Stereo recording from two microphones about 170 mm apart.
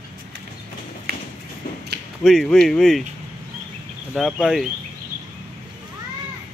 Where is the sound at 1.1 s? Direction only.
65° right (ahead or behind).